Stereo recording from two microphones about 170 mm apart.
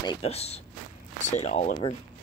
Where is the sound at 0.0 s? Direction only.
30° left (ahead or behind).